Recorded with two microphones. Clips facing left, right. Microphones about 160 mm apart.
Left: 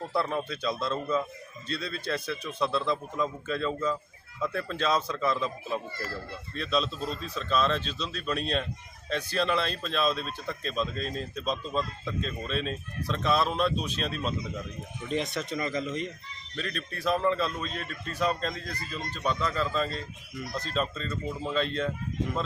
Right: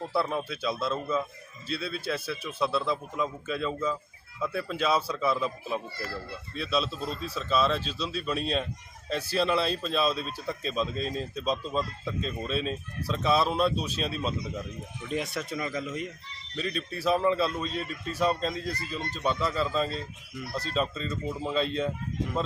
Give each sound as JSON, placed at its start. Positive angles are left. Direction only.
{"t": 0.1, "sound": "speech", "side_deg": -5}
{"t": 19.1, "sound": "speech", "side_deg": -30}
{"t": 19.4, "sound": "speech", "side_deg": -5}
{"t": 20.7, "sound": "speech", "side_deg": 0}